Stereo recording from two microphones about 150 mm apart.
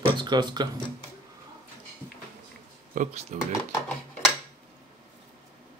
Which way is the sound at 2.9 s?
60° right (ahead or behind).